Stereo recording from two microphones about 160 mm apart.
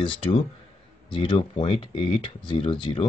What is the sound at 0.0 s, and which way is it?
Speech, 30° left (ahead or behind).